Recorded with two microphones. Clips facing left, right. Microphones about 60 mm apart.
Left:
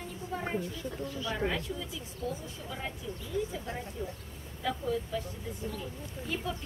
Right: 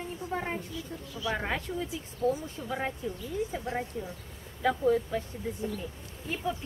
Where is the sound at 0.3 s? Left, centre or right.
Right.